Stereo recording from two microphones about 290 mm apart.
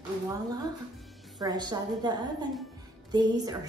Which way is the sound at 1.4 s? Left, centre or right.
Centre.